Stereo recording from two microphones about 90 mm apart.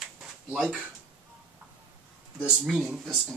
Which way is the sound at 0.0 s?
10° right (ahead or behind).